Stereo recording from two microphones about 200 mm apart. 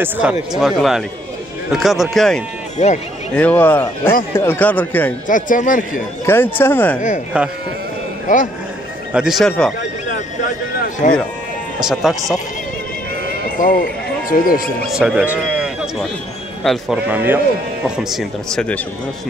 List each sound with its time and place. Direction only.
0.0 s speech: 5° right (ahead or behind); by 5.1 s 10° left (ahead or behind)
5.3 s speech: 40° left (ahead or behind)
6.2 s speech: 10° left (ahead or behind)
7.3 s speech: 5° right (ahead or behind)
9.1 s speech: centre (ahead or behind)
11.0 s speech: 40° left (ahead or behind)
11.8 s speech: centre (ahead or behind)
13.3 s neigh: 45° left (ahead or behind)
14.9 s speech: 5° right (ahead or behind)
16.6 s a man's voice: 5° right (ahead or behind)